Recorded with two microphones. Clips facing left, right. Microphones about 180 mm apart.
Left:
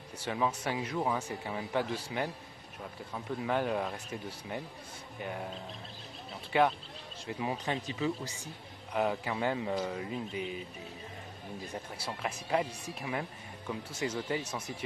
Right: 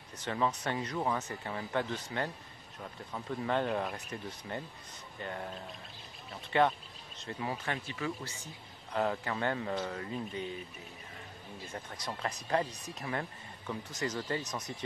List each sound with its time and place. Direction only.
0.2 s speech: 10° left (ahead or behind)
6.5 s speech: 5° left (ahead or behind)
11.6 s speech: 15° left (ahead or behind)